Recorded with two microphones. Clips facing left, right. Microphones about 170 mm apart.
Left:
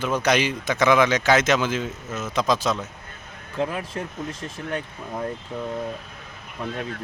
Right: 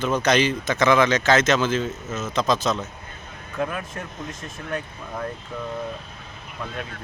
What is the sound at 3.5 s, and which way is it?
Speech, 25° left (ahead or behind).